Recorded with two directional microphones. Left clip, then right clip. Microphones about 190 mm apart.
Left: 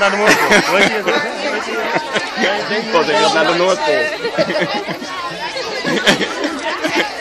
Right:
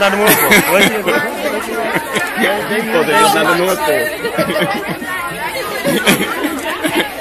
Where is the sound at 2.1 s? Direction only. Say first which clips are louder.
Right 4 dB; 20° left (ahead or behind).